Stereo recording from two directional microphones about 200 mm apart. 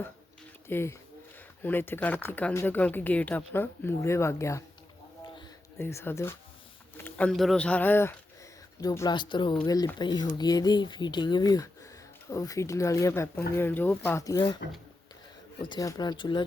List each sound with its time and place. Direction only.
0.7 s speech: 10° left (ahead or behind)
5.2 s a sound: 20° left (ahead or behind)
5.8 s speech: 15° left (ahead or behind)
15.6 s speech: 20° left (ahead or behind)